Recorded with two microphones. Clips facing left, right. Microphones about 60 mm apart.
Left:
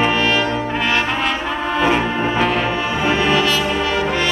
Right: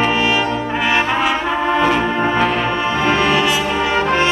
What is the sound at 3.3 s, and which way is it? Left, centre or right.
Brass instrument, centre.